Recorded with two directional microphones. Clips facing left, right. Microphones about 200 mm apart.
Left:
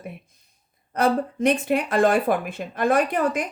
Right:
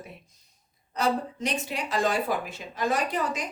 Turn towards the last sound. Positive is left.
turn(degrees=55)  # may be behind; listen again after turning